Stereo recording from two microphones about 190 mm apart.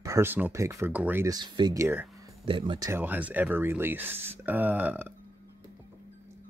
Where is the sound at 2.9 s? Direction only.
10° right (ahead or behind).